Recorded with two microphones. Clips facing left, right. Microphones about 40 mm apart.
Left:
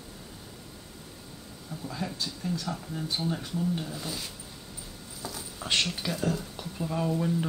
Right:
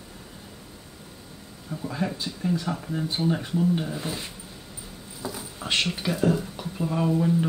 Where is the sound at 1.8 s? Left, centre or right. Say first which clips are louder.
Right 5 dB; right.